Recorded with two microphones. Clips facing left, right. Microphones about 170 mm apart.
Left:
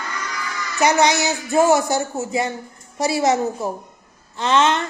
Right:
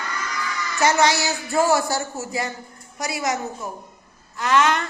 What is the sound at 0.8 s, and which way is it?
A woman's voice, 20° left (ahead or behind).